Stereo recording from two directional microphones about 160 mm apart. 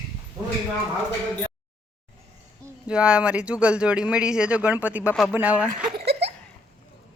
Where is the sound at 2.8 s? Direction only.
5° right (ahead or behind).